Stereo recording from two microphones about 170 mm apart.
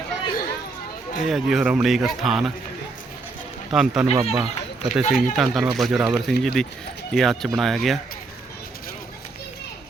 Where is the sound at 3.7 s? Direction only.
5° right (ahead or behind).